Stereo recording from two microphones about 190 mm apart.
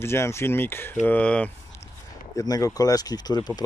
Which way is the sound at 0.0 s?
15° left (ahead or behind).